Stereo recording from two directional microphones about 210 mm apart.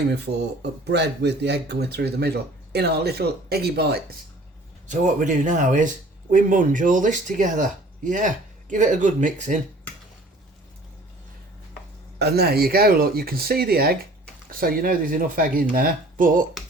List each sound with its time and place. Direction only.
0.6 s speech: 50° right (ahead or behind)
4.9 s speech: 35° right (ahead or behind)
12.2 s speech: 50° right (ahead or behind)